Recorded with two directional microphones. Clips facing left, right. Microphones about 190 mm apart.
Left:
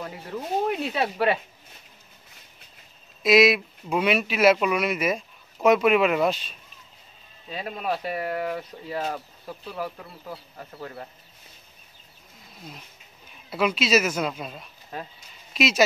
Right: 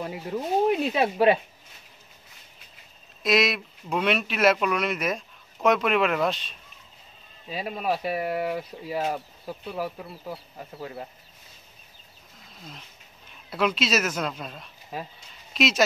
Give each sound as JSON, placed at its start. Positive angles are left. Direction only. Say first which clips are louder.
{"t": 0.7, "sound": "speech", "louder": "right 3 dB", "side_deg": -20}
{"t": 3.2, "sound": "speech", "louder": "left 5 dB", "side_deg": 5}
{"t": 7.5, "sound": "speech", "louder": "right 1 dB", "side_deg": -5}
{"t": 13.5, "sound": "speech", "louder": "left 2 dB", "side_deg": 0}
{"t": 14.9, "sound": "speech", "louder": "right 1 dB", "side_deg": -5}